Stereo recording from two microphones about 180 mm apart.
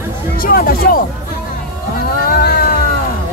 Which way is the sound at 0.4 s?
55° left (ahead or behind).